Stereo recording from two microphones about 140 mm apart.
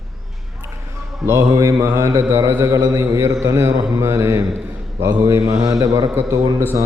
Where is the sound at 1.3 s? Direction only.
20° right (ahead or behind).